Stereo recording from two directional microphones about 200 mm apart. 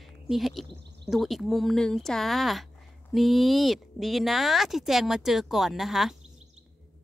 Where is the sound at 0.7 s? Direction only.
60° right (ahead or behind).